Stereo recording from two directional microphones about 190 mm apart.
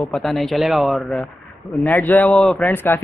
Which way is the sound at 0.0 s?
Centre (ahead or behind).